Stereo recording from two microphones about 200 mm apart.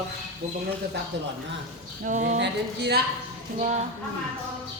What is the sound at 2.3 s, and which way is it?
Speech, 55° right (ahead or behind).